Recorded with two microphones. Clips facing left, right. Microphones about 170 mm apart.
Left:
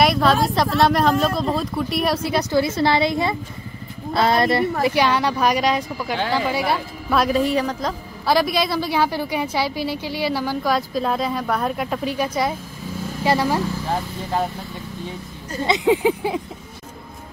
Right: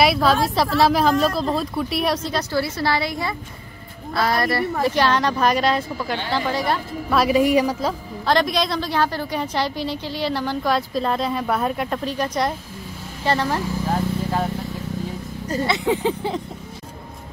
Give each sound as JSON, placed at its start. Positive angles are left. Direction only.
{"t": 0.0, "sound": "speech", "side_deg": 0}
{"t": 2.2, "sound": "a woman's voice", "side_deg": 15}
{"t": 4.8, "sound": "a woman's voice", "side_deg": 10}
{"t": 6.7, "sound": "speech", "side_deg": 0}
{"t": 7.3, "sound": "a woman's voice", "side_deg": -10}
{"t": 8.3, "sound": "a woman's voice", "side_deg": 5}
{"t": 15.6, "sound": "a woman's voice", "side_deg": 20}